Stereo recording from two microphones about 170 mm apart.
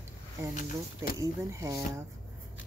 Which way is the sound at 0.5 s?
60° left (ahead or behind).